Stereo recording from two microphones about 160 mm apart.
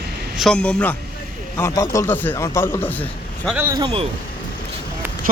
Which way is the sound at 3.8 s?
30° right (ahead or behind).